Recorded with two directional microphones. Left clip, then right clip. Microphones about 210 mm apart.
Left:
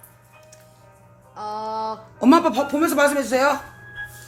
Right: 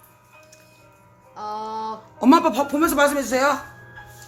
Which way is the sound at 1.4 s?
Centre (ahead or behind).